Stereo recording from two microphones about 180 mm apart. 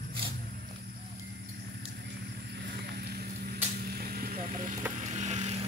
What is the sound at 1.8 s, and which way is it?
Vehicle, 75° right (ahead or behind).